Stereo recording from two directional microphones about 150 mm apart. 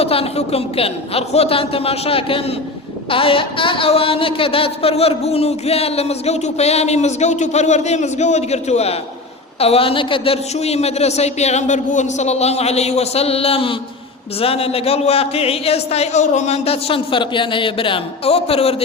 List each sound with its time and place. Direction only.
0.0 s a man's voice: 40° left (ahead or behind)
3.1 s a sound: 35° left (ahead or behind)
14.4 s a man's voice: 40° left (ahead or behind)